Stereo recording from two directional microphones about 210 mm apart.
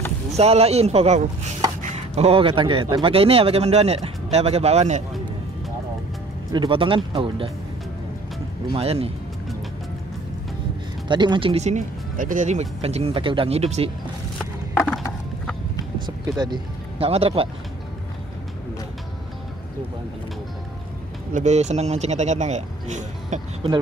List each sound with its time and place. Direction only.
0.4 s a man's voice: 30° right (ahead or behind)
6.5 s a man's voice: 20° right (ahead or behind)
8.7 s a man's voice: 30° right (ahead or behind)
11.1 s a man's voice: 20° right (ahead or behind)
14.4 s clip-clop: 5° left (ahead or behind)
16.3 s speech: 20° right (ahead or behind)
21.3 s speech: 35° right (ahead or behind)